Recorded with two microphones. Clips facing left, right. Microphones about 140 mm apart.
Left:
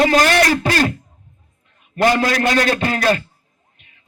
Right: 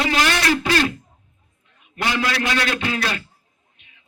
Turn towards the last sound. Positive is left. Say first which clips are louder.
# left 7 dB
turn(degrees=45)  # may be behind; listen again after turning